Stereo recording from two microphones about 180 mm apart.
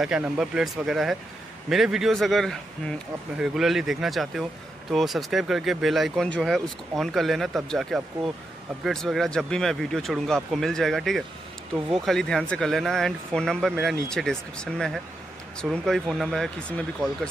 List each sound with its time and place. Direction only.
0.0 s speech: 5° right (ahead or behind)